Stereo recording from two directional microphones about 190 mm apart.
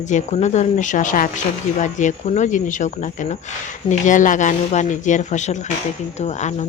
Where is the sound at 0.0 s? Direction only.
40° left (ahead or behind).